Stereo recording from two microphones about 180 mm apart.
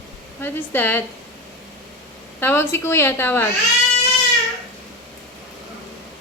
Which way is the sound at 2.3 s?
15° left (ahead or behind).